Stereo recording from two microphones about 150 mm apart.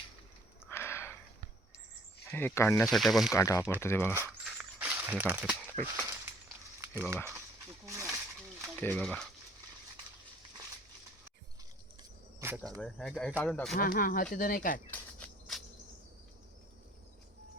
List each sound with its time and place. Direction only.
0.7 s a sound: 15° left (ahead or behind)
2.2 s speech: 15° left (ahead or behind)
2.8 s speech: centre (ahead or behind)
3.3 s speech: 20° left (ahead or behind)
4.1 s speech: 15° right (ahead or behind)
4.4 s a sound: 10° right (ahead or behind)
5.8 s speech: 15° right (ahead or behind)
8.7 s a sound: 10° left (ahead or behind)
9.0 s speech: centre (ahead or behind)
12.4 s speech: 15° right (ahead or behind)
12.8 s speech: 5° left (ahead or behind)
13.7 s speech: 70° left (ahead or behind)
14.8 s insect: 5° left (ahead or behind)